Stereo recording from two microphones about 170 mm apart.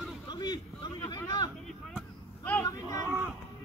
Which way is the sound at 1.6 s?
Centre (ahead or behind).